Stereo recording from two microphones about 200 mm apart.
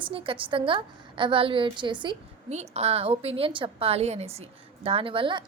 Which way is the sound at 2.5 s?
35° right (ahead or behind).